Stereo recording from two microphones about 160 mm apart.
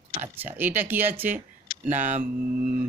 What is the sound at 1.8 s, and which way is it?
Speech, 50° right (ahead or behind).